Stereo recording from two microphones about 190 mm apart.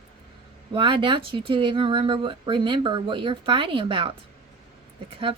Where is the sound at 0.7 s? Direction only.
25° right (ahead or behind).